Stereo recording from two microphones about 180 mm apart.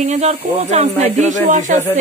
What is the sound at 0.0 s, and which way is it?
Speech, 40° right (ahead or behind).